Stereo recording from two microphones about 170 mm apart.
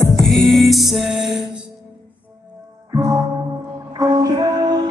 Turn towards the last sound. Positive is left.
turn(degrees=-25)  # may be behind; listen again after turning